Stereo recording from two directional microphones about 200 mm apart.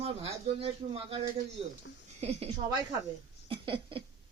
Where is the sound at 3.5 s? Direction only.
25° right (ahead or behind).